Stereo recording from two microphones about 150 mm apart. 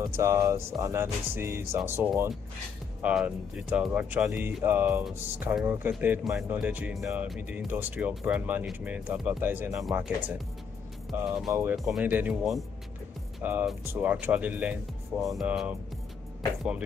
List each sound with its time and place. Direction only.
0.1 s speech: 20° right (ahead or behind); by 12.1 s centre (ahead or behind)
12.1 s speech: 10° right (ahead or behind)
13.4 s speech: 10° right (ahead or behind)